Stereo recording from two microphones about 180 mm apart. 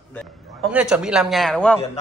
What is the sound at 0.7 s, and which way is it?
Speech, 5° right (ahead or behind).